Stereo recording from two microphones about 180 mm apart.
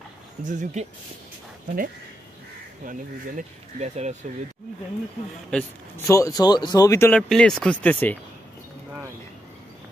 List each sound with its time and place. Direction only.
0.5 s speech: 40° right (ahead or behind)
2.8 s speech: 50° right (ahead or behind)
5.5 s a man's voice: 5° left (ahead or behind)
6.0 s speech: 15° left (ahead or behind)